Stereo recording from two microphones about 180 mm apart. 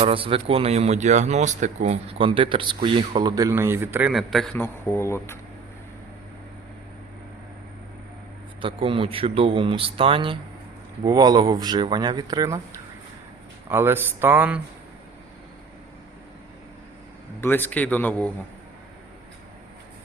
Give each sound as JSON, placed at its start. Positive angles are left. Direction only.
{"t": 0.0, "sound": "speech", "side_deg": -30}
{"t": 4.1, "sound": "a man's voice", "side_deg": 0}
{"t": 4.5, "sound": "a man's voice", "side_deg": 10}
{"t": 8.6, "sound": "speech", "side_deg": -30}
{"t": 13.7, "sound": "speech", "side_deg": -10}
{"t": 17.4, "sound": "a man's voice", "side_deg": 10}